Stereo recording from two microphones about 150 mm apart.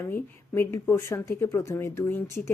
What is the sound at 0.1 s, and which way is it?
A woman's voice, 15° left (ahead or behind).